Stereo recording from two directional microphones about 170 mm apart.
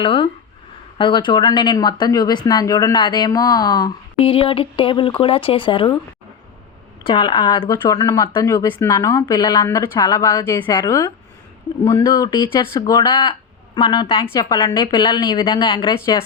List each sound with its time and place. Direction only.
0.0 s speech: 30° left (ahead or behind)
4.2 s speech: 35° left (ahead or behind)
7.0 s speech: 25° left (ahead or behind)